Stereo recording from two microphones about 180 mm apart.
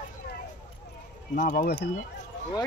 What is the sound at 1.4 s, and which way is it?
Speech, 45° left (ahead or behind).